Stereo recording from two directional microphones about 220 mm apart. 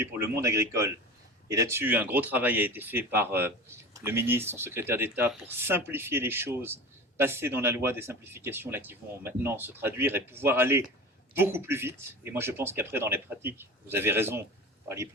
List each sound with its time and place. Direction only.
0.0 s speech: 10° right (ahead or behind)